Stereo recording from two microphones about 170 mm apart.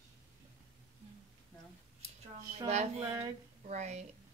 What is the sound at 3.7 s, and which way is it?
Speech, 40° right (ahead or behind).